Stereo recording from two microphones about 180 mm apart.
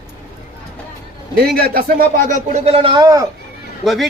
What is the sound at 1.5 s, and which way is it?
Speech, 55° right (ahead or behind).